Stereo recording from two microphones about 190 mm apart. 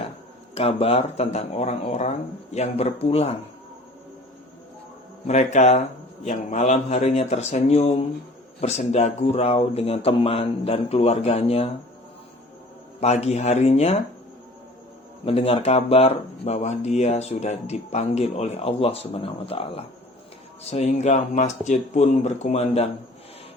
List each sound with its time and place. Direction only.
0.5 s speech: 30° left (ahead or behind)
5.2 s speech: 35° left (ahead or behind)
13.0 s speech: 35° left (ahead or behind)
15.2 s speech: 30° left (ahead or behind)